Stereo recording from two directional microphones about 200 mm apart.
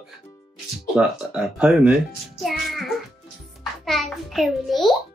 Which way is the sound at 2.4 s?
Centre (ahead or behind).